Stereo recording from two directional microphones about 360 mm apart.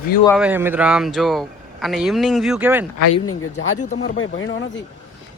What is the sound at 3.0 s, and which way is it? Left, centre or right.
Speech, left.